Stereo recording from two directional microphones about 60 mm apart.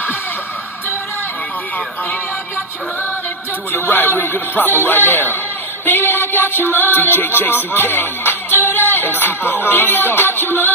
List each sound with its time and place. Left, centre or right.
3.9 s music: left